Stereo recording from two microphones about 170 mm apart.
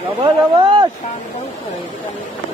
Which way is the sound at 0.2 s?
30° right (ahead or behind).